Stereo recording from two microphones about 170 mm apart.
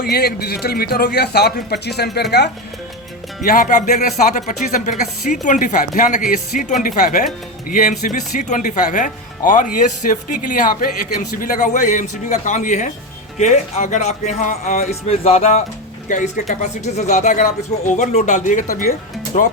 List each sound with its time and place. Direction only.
0.0 s a man's voice: 70° left (ahead or behind)
3.4 s speech: 50° left (ahead or behind)
19.3 s speech: 40° left (ahead or behind)